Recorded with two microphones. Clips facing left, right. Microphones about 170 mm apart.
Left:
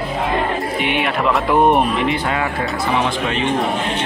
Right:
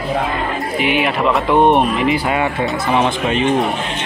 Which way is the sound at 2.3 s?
20° right (ahead or behind).